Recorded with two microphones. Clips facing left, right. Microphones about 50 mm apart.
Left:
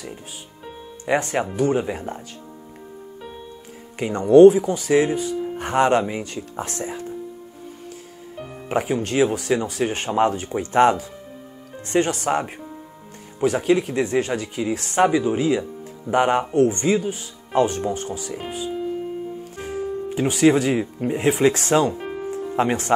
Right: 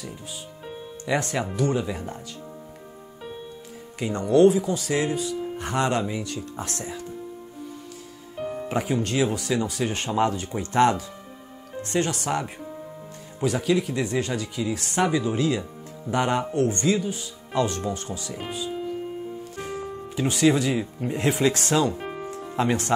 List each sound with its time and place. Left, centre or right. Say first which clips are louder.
1.0 s speech: left 4 dB; left
4.0 s speech: left 7 dB; left
8.4 s music: right 6 dB; centre
8.6 s speech: left 4 dB; left
13.4 s speech: left 4 dB; left
19.5 s music: left 1 dB; left
20.1 s speech: left 4 dB; left
21.1 s speech: left 4 dB; left
22.0 s music: left 4 dB; centre
22.6 s speech: left 3 dB; left